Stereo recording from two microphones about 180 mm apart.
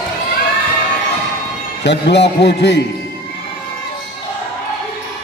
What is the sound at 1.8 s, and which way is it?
A man's voice, 75° left (ahead or behind).